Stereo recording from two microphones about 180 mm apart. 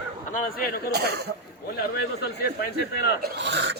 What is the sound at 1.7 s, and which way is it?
A man's voice, 60° left (ahead or behind).